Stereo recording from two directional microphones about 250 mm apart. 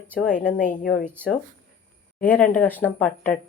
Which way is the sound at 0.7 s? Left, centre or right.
Left.